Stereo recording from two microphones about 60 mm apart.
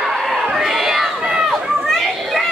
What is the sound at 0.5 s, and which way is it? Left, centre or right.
Crowd, centre.